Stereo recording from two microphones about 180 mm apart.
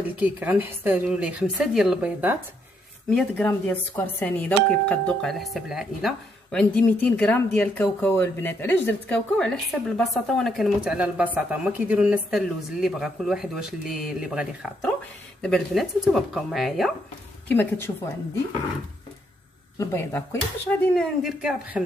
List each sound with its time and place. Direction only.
0.0 s a woman's voice: 10° right (ahead or behind)
3.2 s speech: 10° left (ahead or behind)
17.5 s speech: 10° left (ahead or behind)
19.8 s speech: 15° left (ahead or behind)
20.9 s speech: centre (ahead or behind)